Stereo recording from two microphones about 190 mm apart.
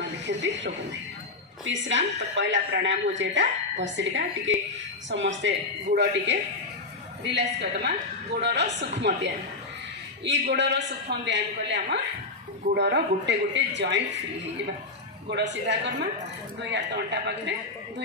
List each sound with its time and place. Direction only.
0.0 s a sound: 65° right (ahead or behind)
1.6 s a woman's voice: 70° right (ahead or behind)
10.5 s a man's voice: 65° right (ahead or behind)
15.2 s a man's voice: 65° right (ahead or behind)